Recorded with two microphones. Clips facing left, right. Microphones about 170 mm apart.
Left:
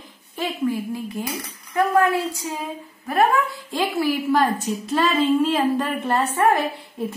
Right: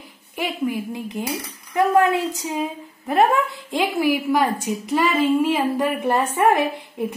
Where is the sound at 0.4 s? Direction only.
15° right (ahead or behind).